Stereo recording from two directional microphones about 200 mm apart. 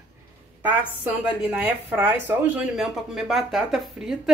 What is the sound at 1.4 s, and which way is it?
Speech, 10° right (ahead or behind).